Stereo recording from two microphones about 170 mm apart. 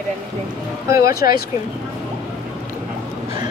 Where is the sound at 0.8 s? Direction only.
15° right (ahead or behind).